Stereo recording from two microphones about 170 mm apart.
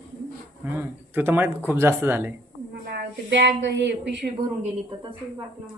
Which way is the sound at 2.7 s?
80° right.